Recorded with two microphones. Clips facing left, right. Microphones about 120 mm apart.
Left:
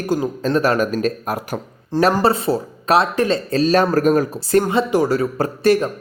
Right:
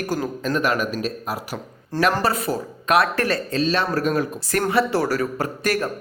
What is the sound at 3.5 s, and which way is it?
Speech, 40° left (ahead or behind).